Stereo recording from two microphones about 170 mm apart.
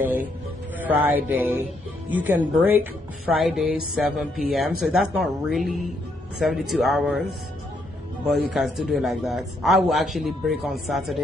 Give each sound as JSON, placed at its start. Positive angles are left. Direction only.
{"t": 0.0, "sound": "a woman's voice", "side_deg": -10}